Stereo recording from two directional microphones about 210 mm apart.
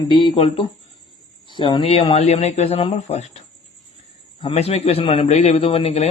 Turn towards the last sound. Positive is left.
turn(degrees=30)  # may be behind; listen again after turning